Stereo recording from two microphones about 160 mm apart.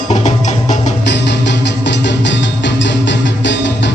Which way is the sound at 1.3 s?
90° left.